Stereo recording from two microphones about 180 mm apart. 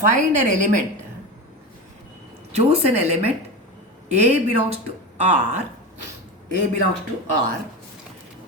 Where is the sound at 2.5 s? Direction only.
35° right (ahead or behind).